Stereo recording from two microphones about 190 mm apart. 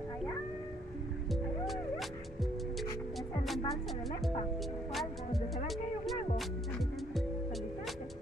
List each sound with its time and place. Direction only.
1.3 s music: centre (ahead or behind)
3.4 s music: centre (ahead or behind)
5.7 s a sound: centre (ahead or behind)